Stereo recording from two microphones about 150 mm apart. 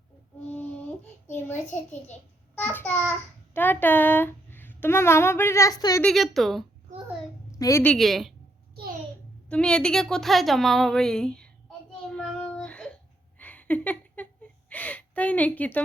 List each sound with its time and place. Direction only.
1.3 s speech: 15° left (ahead or behind)
6.0 s a woman's voice: centre (ahead or behind)
7.6 s a woman's voice: 20° left (ahead or behind)
7.9 s a woman's voice: centre (ahead or behind)
9.5 s a woman's voice: 5° left (ahead or behind)
12.1 s a sound: 5° left (ahead or behind)
14.7 s a woman's voice: 10° left (ahead or behind)